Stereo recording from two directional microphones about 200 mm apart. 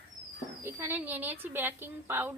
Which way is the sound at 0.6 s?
10° right (ahead or behind).